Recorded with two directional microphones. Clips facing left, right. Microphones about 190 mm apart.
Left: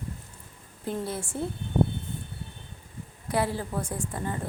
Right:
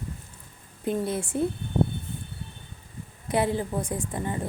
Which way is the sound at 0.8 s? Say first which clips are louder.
Right 4 dB; 20° right (ahead or behind).